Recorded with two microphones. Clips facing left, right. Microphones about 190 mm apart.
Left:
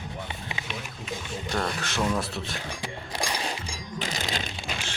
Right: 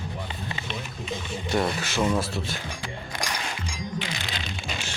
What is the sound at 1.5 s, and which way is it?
Speech, 5° right (ahead or behind).